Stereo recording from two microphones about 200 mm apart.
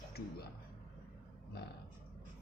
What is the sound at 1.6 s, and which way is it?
Speech, 55° left (ahead or behind).